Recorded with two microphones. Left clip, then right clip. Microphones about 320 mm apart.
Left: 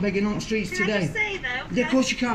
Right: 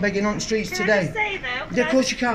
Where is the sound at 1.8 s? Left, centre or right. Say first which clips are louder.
Right 3 dB; centre.